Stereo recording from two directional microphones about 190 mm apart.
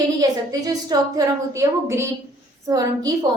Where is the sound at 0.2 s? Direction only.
20° right (ahead or behind).